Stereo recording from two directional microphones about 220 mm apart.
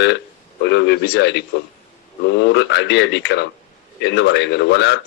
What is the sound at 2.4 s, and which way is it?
Speech, 55° left (ahead or behind).